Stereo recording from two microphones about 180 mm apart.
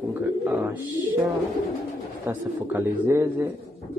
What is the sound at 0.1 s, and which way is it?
Wild animals, 10° right (ahead or behind).